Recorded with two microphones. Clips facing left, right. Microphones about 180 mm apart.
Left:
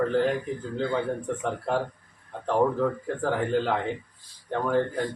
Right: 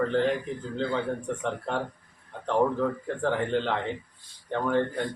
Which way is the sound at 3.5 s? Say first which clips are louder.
Left 2 dB; 5° left (ahead or behind).